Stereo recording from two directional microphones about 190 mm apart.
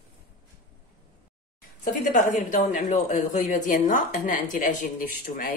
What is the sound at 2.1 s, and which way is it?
Speech, 40° left (ahead or behind).